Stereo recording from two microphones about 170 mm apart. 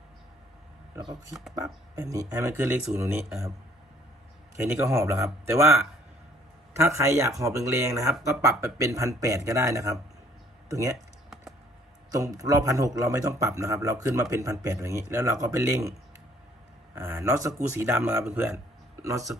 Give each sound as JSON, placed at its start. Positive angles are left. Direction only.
{"t": 1.5, "sound": "speech", "side_deg": -20}
{"t": 4.5, "sound": "speech", "side_deg": -15}
{"t": 6.7, "sound": "a man's voice", "side_deg": -15}
{"t": 10.9, "sound": "typing", "side_deg": 0}
{"t": 12.1, "sound": "a man's voice", "side_deg": -20}